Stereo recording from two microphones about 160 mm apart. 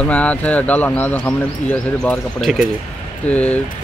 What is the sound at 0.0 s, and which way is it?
Speech, 10° left (ahead or behind).